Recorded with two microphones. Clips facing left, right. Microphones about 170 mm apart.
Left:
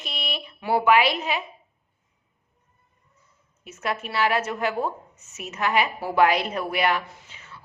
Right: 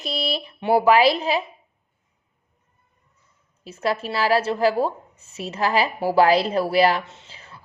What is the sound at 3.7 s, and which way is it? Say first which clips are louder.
A woman's voice: right 5 dB; 30° right (ahead or behind).